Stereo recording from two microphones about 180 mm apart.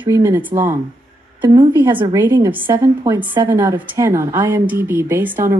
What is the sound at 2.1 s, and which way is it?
A woman's voice, 15° right (ahead or behind).